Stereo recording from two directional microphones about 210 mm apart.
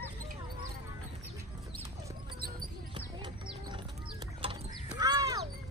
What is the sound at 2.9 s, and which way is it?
Music, 25° right (ahead or behind).